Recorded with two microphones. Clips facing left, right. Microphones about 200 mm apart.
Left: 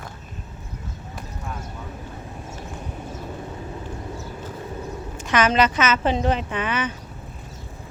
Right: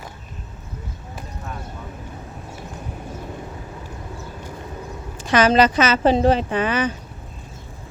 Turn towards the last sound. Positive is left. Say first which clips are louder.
# right 5 dB
turn(degrees=-35)  # may be behind; listen again after turning